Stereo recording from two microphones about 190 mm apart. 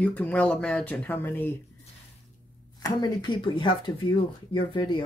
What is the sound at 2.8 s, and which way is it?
Speech, 25° left (ahead or behind).